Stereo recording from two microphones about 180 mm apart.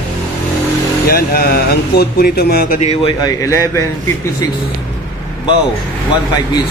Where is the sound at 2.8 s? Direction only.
30° left (ahead or behind).